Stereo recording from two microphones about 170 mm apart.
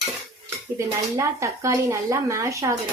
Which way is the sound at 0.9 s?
20° right (ahead or behind).